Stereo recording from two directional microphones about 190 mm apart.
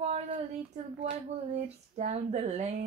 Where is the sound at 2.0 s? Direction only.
35° right (ahead or behind).